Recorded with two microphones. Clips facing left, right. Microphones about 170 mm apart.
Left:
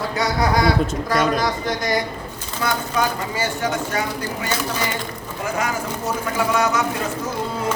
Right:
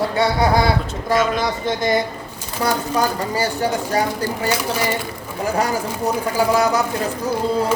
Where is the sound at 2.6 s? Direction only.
35° right (ahead or behind).